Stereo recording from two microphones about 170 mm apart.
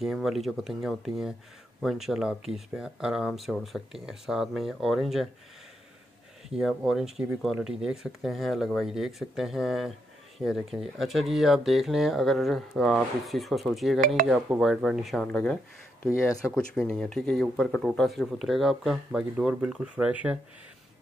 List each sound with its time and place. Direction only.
0.0 s speech: centre (ahead or behind)
6.5 s speech: 5° right (ahead or behind)
16.1 s speech: 15° left (ahead or behind)
16.5 s speech: 5° left (ahead or behind)